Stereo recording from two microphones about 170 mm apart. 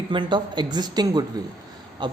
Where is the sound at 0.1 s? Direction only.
30° right (ahead or behind).